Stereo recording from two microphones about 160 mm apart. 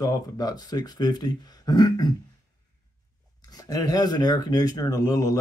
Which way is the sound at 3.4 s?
25° left (ahead or behind).